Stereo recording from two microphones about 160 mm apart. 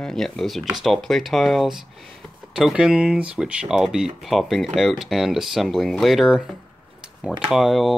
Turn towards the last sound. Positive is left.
turn(degrees=0)  # may be behind; listen again after turning